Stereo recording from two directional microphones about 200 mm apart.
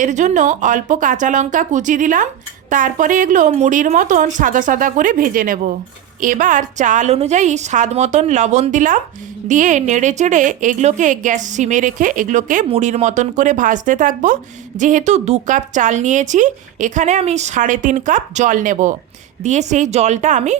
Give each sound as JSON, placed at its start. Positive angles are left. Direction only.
{"t": 0.0, "sound": "a woman's voice", "side_deg": -35}